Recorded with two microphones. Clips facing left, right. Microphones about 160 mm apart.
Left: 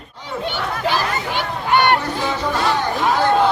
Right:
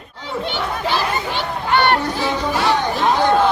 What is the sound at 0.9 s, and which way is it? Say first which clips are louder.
Chatter: right 2 dB; 15° left (ahead or behind).